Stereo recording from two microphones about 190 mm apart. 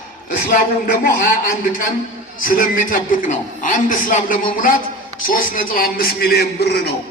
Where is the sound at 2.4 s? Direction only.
45° left (ahead or behind).